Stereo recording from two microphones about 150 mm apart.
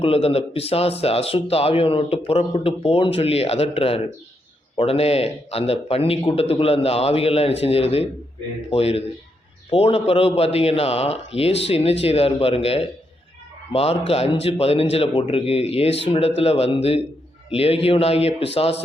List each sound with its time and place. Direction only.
0.0 s a man's voice: 40° left (ahead or behind)
14.1 s speech: 40° left (ahead or behind)